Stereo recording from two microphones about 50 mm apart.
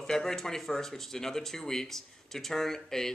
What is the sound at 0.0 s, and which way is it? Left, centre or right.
Speech, centre.